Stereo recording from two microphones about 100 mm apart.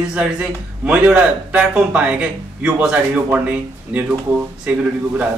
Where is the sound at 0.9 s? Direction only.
10° right (ahead or behind).